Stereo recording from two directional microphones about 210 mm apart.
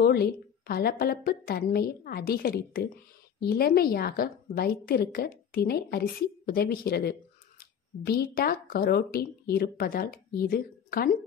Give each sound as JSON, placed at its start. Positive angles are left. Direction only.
{"t": 0.0, "sound": "a woman's voice", "side_deg": 45}